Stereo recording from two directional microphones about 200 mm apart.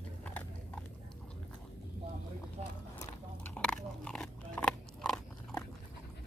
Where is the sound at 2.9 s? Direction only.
10° left (ahead or behind).